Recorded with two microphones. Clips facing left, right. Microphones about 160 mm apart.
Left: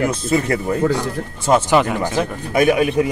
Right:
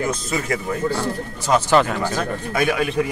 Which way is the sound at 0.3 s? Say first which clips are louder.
Left 5 dB; 35° left (ahead or behind).